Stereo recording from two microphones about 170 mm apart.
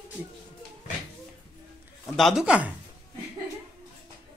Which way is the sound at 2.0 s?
Centre (ahead or behind).